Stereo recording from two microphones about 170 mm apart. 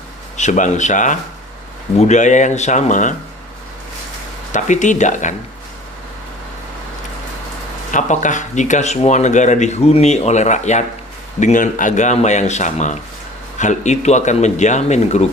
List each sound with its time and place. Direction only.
0.3 s speech: 45° left (ahead or behind)
4.5 s speech: 45° left (ahead or behind)
7.9 s speech: 45° left (ahead or behind)